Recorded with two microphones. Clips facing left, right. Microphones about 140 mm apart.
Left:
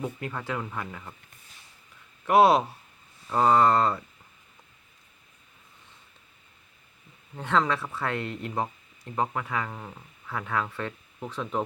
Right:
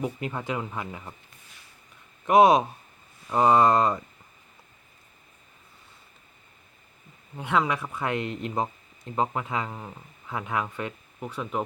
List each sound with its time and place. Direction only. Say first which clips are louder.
0.0 s speech: right 3 dB; 20° right (ahead or behind)
2.2 s speech: right 2 dB; 20° right (ahead or behind)
7.3 s speech: even; 10° right (ahead or behind)